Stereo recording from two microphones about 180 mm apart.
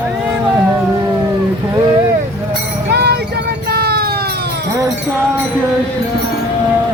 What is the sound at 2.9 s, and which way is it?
Music, 65° right (ahead or behind).